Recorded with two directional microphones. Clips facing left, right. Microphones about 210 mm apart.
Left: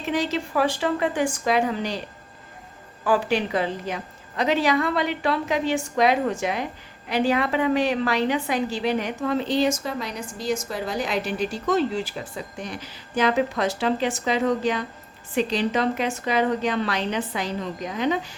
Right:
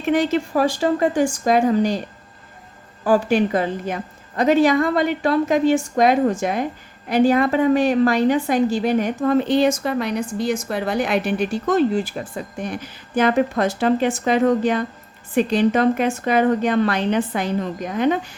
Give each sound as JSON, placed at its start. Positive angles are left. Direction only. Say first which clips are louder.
{"t": 0.0, "sound": "a woman's voice", "louder": "right 6 dB", "side_deg": -55}
{"t": 3.0, "sound": "a woman's voice", "louder": "right 5 dB", "side_deg": -45}